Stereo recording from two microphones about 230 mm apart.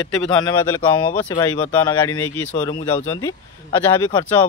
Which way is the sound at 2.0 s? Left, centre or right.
Left.